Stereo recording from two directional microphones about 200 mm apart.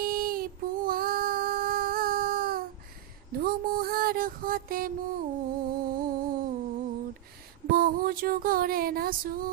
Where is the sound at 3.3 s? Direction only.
45° right (ahead or behind).